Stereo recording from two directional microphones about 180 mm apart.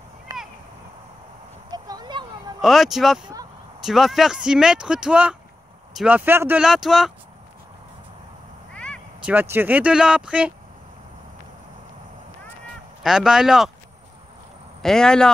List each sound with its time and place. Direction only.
0.3 s a sound: 20° right (ahead or behind)
1.7 s a sound: 20° right (ahead or behind)
2.6 s speech: centre (ahead or behind)
8.7 s meow: 5° left (ahead or behind)
9.2 s speech: 10° right (ahead or behind)
13.0 s speech: 5° right (ahead or behind)
14.8 s speech: 5° left (ahead or behind)